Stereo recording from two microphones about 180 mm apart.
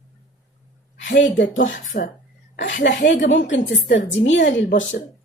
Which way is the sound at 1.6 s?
45° left (ahead or behind).